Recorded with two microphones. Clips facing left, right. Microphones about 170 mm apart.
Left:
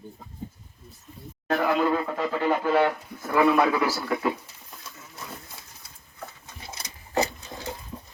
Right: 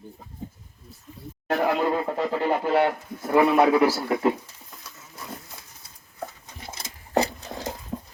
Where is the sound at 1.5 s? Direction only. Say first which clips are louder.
Even; 25° right (ahead or behind).